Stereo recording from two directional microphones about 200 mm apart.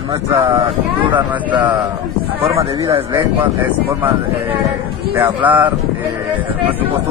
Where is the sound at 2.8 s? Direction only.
20° right (ahead or behind).